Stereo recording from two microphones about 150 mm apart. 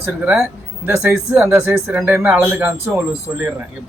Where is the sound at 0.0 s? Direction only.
10° right (ahead or behind).